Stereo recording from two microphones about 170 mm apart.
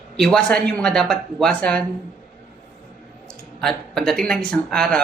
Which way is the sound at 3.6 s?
5° left (ahead or behind).